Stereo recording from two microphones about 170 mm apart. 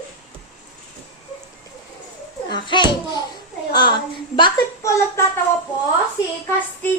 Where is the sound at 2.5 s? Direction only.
25° left (ahead or behind).